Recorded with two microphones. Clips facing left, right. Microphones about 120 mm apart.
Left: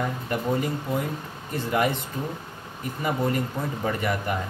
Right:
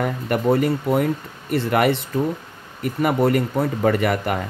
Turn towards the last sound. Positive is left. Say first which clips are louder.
# right 7 dB
turn(degrees=-90)